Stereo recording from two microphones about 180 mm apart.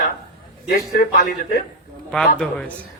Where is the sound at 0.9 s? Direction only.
50° left (ahead or behind).